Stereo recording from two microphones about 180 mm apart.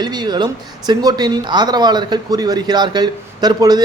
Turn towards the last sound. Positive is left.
turn(degrees=-20)  # may be behind; listen again after turning